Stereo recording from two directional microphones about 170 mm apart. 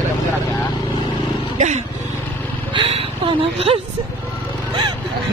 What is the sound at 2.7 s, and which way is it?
Speech, 30° right (ahead or behind).